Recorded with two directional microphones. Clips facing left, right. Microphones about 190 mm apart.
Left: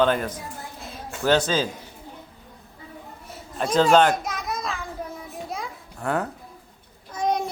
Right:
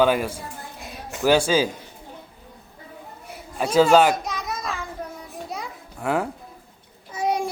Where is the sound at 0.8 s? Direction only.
15° right (ahead or behind).